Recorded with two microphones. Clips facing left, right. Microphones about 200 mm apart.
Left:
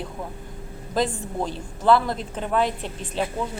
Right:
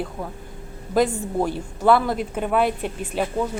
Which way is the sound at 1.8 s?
5° right (ahead or behind).